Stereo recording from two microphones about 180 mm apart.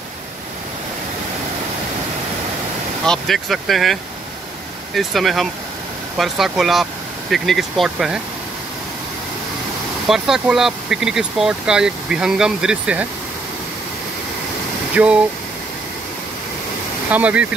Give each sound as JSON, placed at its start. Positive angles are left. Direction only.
{"t": 3.1, "sound": "speech", "side_deg": 0}
{"t": 10.0, "sound": "speech", "side_deg": 0}
{"t": 15.0, "sound": "speech", "side_deg": -5}
{"t": 17.1, "sound": "speech", "side_deg": -5}